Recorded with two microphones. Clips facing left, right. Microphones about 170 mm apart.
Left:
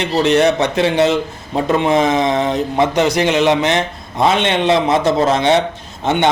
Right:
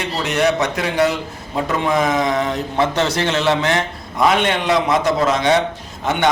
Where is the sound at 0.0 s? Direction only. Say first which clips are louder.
Left 5 dB; 30° left (ahead or behind).